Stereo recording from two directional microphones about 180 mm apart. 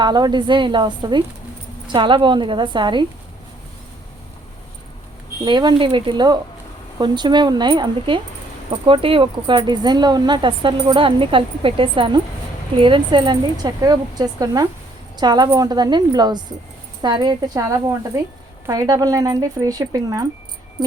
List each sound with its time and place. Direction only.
0.0 s speech: 25° right (ahead or behind)
5.5 s a woman's voice: 25° right (ahead or behind)